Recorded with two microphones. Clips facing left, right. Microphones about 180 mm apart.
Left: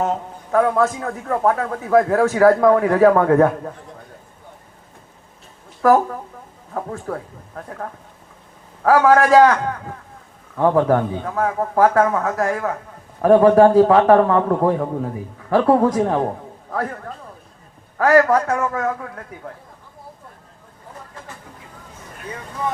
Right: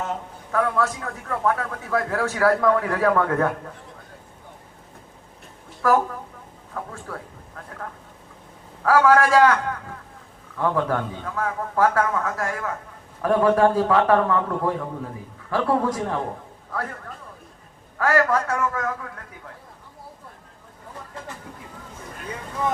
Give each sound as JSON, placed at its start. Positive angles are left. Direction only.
{"t": 0.0, "sound": "a man's voice", "side_deg": 35}
{"t": 6.7, "sound": "a man's voice", "side_deg": 35}
{"t": 18.3, "sound": "a man's voice", "side_deg": 35}